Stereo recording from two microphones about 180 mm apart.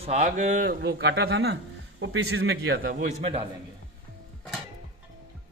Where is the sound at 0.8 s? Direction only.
75° right (ahead or behind).